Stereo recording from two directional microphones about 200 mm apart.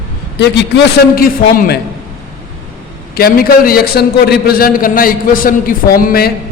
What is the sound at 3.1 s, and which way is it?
A man's voice, 50° left (ahead or behind).